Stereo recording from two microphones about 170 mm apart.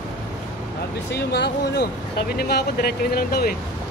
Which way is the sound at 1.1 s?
80° left.